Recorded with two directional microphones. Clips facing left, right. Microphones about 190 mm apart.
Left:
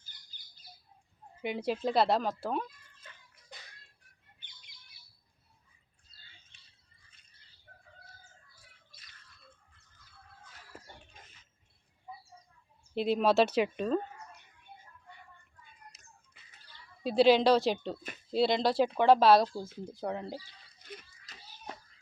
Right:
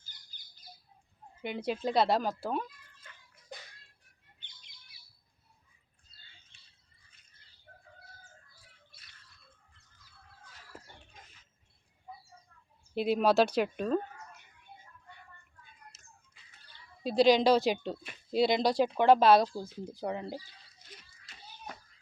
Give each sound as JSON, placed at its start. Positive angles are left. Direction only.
{"t": 1.4, "sound": "speech", "side_deg": 5}
{"t": 12.9, "sound": "speech", "side_deg": -5}
{"t": 13.6, "sound": "chicken", "side_deg": 0}
{"t": 17.0, "sound": "speech", "side_deg": 5}
{"t": 21.3, "sound": "a sound", "side_deg": 40}